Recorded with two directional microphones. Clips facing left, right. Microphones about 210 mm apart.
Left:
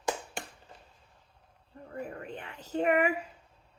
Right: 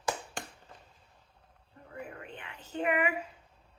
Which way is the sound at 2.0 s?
40° left (ahead or behind).